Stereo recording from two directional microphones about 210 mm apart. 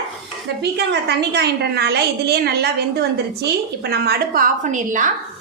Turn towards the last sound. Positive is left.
turn(degrees=-35)  # may be behind; listen again after turning